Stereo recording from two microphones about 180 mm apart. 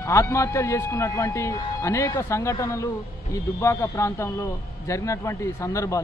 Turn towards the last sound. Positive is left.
turn(degrees=15)  # may be behind; listen again after turning